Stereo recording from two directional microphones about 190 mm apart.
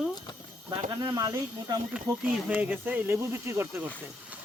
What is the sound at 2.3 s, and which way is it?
Speech, 5° right (ahead or behind).